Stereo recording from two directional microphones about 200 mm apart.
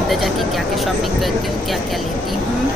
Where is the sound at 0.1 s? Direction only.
Centre (ahead or behind).